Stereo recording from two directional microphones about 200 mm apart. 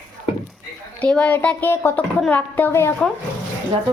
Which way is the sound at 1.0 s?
5° left (ahead or behind).